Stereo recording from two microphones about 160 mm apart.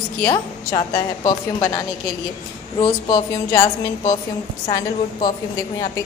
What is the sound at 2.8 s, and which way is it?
A woman's voice, 30° left (ahead or behind).